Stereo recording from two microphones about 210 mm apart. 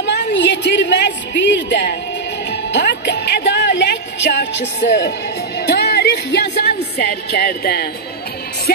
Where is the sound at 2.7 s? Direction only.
55° left (ahead or behind).